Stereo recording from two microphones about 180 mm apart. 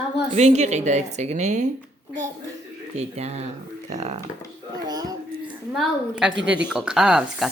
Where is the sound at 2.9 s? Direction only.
35° right (ahead or behind).